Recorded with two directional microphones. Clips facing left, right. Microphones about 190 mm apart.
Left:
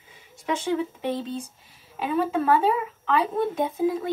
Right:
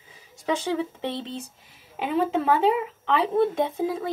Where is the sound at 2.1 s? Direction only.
25° right (ahead or behind).